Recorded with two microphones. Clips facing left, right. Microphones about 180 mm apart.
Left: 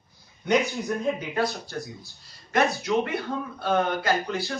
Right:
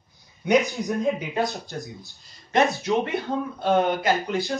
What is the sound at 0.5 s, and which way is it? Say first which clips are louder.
Speech: right 3 dB; 15° right (ahead or behind).